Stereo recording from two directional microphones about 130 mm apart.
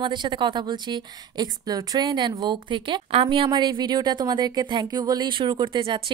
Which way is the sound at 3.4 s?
35° right (ahead or behind).